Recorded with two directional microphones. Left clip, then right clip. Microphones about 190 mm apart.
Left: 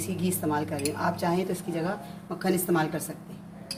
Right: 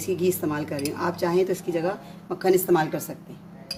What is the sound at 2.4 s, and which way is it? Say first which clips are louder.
Speech: right 6 dB; 65° right (ahead or behind).